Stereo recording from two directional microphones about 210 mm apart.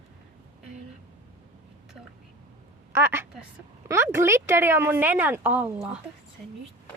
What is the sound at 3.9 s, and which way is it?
Speech, 15° right (ahead or behind).